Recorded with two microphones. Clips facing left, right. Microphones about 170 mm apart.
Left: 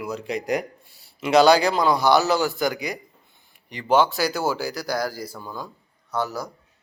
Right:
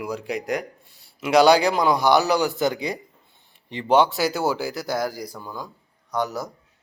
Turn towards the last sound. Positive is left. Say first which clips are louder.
# right 1 dB
turn(degrees=-20)  # may be behind; listen again after turning